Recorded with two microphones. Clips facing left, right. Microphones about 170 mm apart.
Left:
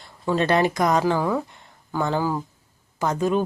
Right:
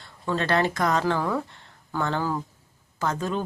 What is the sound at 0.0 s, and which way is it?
Speech, 15° left (ahead or behind).